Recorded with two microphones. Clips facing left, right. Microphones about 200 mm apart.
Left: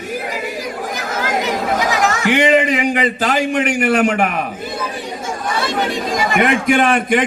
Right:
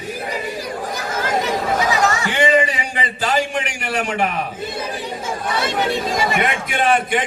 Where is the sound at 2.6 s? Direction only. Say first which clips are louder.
Left 5 dB; 60° left (ahead or behind).